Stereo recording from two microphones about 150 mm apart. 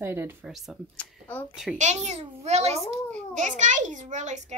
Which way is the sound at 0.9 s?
10° left (ahead or behind).